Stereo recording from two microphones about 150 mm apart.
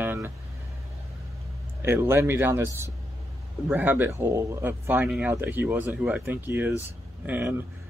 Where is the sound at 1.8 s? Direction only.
15° right (ahead or behind).